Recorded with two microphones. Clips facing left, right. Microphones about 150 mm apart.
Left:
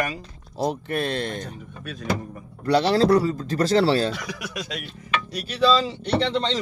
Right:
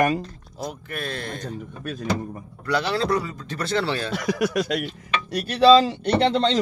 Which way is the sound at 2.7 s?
35° left (ahead or behind).